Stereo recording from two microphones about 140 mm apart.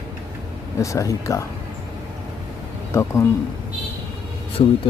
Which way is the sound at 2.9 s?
20° left (ahead or behind).